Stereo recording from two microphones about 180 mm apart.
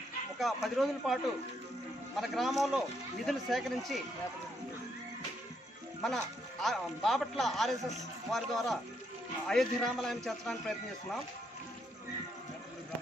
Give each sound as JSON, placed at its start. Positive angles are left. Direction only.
{"t": 0.4, "sound": "speech", "side_deg": 0}
{"t": 6.0, "sound": "speech", "side_deg": 0}